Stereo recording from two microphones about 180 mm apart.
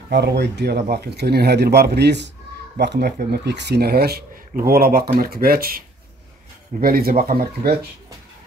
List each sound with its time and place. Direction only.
0.1 s speech: 70° right (ahead or behind)